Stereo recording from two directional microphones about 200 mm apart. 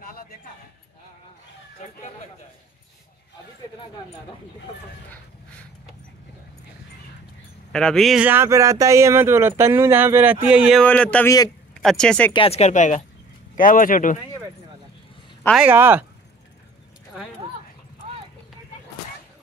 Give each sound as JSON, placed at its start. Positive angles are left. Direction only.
{"t": 7.7, "sound": "speech", "side_deg": 0}
{"t": 12.3, "sound": "speech", "side_deg": 30}
{"t": 15.5, "sound": "speech", "side_deg": -10}